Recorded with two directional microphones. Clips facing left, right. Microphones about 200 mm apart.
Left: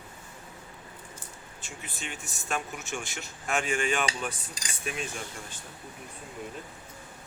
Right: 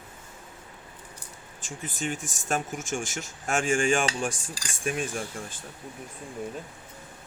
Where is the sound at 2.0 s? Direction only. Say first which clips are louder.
Right 11 dB; 45° right (ahead or behind).